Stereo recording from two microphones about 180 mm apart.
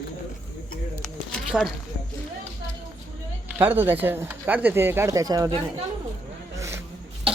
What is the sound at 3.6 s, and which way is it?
Speech, 10° right (ahead or behind).